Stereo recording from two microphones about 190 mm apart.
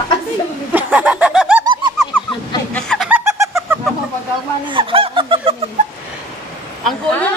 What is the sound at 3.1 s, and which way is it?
Snicker, 15° right (ahead or behind).